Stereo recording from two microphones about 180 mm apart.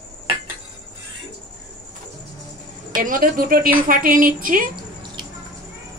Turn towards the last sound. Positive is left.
turn(degrees=-50)  # may be behind; listen again after turning